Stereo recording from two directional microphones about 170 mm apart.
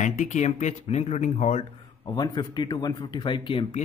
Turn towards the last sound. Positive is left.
turn(degrees=30)  # may be behind; listen again after turning